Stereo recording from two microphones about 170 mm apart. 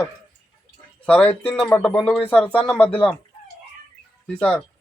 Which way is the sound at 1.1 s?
10° left (ahead or behind).